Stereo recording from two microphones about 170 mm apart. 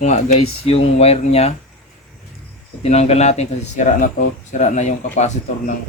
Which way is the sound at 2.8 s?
40° left (ahead or behind).